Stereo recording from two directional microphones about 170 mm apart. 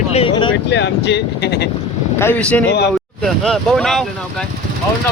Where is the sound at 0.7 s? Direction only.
90° left; by 1.6 s 75° left (ahead or behind).